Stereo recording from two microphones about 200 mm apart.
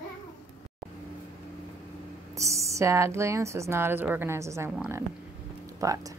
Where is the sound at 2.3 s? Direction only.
15° right (ahead or behind).